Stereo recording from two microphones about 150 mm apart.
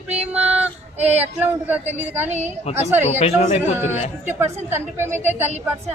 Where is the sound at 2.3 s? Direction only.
50° right (ahead or behind).